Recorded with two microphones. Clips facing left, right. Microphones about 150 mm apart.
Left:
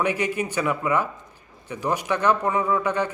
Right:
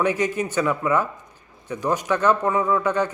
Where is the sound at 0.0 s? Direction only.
10° left (ahead or behind).